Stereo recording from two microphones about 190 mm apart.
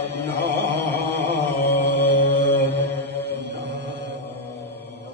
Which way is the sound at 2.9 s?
10° left (ahead or behind).